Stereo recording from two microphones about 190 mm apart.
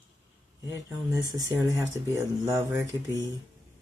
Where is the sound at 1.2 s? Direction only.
20° right (ahead or behind).